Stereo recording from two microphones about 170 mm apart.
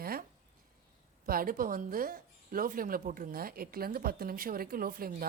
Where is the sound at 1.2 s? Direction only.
55° right (ahead or behind).